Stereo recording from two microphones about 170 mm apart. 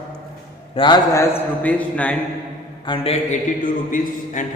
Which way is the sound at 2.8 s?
30° left (ahead or behind).